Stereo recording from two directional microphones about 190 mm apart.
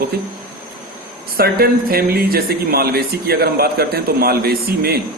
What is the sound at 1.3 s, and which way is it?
Speech, 50° right (ahead or behind).